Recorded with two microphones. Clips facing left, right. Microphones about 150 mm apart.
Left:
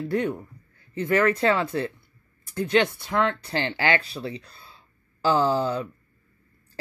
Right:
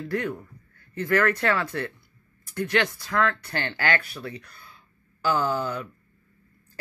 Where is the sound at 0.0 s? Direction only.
25° left (ahead or behind).